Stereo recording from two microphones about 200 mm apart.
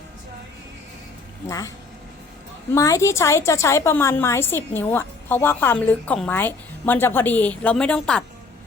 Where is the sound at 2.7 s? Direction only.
15° left (ahead or behind).